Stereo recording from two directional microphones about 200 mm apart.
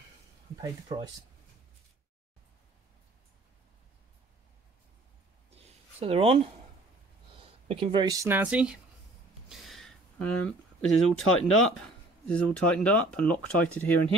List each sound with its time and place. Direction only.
0.6 s speech: 20° right (ahead or behind)
5.9 s speech: 30° right (ahead or behind); by 8.8 s 5° right (ahead or behind)
9.5 s a sound: centre (ahead or behind)
11.1 s speech: 90° left
11.6 s speech: 5° left (ahead or behind)